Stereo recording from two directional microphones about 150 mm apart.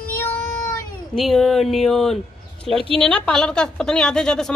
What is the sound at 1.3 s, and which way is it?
Speech, centre (ahead or behind).